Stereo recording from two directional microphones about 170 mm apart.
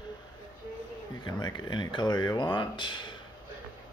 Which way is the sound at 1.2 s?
25° left (ahead or behind).